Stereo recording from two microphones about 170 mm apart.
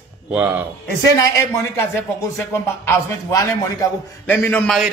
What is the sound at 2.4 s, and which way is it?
A man's voice, 15° left (ahead or behind).